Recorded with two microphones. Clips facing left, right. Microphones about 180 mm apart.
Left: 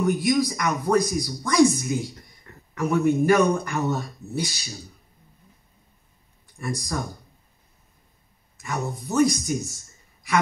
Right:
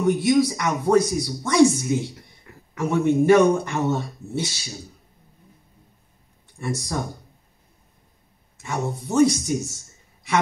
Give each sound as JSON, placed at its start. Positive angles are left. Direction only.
{"t": 0.0, "sound": "speech", "side_deg": -25}
{"t": 2.4, "sound": "a sound", "side_deg": -10}
{"t": 2.8, "sound": "speech", "side_deg": -25}
{"t": 6.6, "sound": "speech", "side_deg": -25}
{"t": 8.5, "sound": "speech", "side_deg": -25}